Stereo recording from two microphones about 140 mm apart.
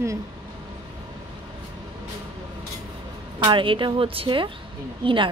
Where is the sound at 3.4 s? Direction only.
35° right (ahead or behind).